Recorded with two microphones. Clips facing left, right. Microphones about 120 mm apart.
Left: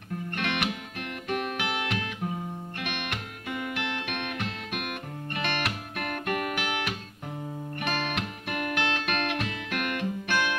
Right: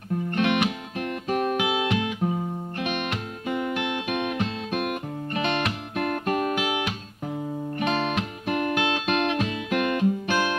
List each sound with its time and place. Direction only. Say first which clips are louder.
0.4 s music: right 8 dB; 20° right (ahead or behind)
0.9 s guitar: right 5 dB; 35° right (ahead or behind)
1.6 s music: right 7 dB; 15° right (ahead or behind)
4.6 s music: right 7 dB; 35° right (ahead or behind)
6.5 s music: right 5 dB; 15° right (ahead or behind)
7.8 s music: right 5 dB; 25° right (ahead or behind)
8.7 s music: right 5 dB; 15° right (ahead or behind); by 10.6 s 35° right (ahead or behind)